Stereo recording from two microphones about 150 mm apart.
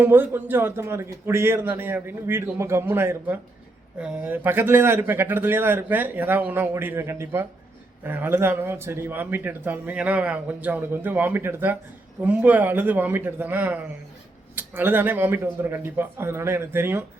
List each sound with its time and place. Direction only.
0.0 s speech: 15° right (ahead or behind)